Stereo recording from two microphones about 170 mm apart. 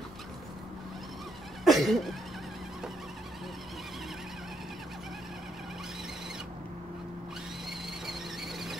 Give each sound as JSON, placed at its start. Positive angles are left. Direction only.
{"t": 1.6, "sound": "cough", "side_deg": 0}
{"t": 8.1, "sound": "squeal", "side_deg": 0}